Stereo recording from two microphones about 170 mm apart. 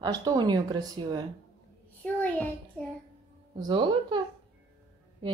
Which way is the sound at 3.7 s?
30° right (ahead or behind).